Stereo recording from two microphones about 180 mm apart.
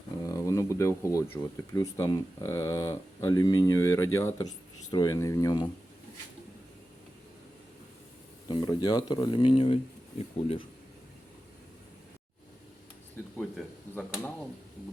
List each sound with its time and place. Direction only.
0.3 s speech: 15° left (ahead or behind)
8.4 s speech: 25° left (ahead or behind)
13.9 s speech: 5° left (ahead or behind)